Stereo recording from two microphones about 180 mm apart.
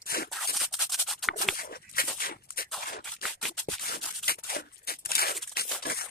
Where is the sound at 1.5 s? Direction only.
55° left (ahead or behind).